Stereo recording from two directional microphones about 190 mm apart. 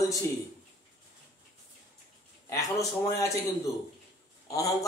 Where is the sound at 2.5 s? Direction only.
15° left (ahead or behind).